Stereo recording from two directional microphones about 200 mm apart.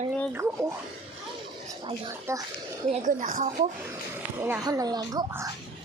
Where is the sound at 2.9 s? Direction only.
40° right (ahead or behind).